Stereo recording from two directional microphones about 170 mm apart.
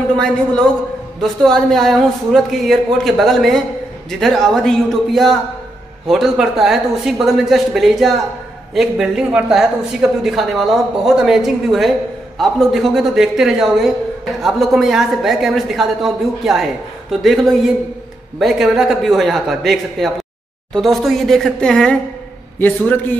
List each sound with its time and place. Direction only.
0.1 s a man's voice: 5° left (ahead or behind)